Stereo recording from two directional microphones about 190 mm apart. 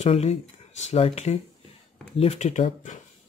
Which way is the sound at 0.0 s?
35° left (ahead or behind).